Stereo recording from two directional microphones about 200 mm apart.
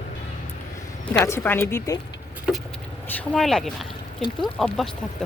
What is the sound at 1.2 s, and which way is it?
Speech, 15° left (ahead or behind).